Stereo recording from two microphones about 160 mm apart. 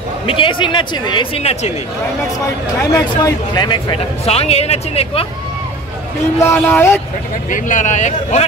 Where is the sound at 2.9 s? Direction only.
25° left (ahead or behind); by 5.2 s 40° left (ahead or behind).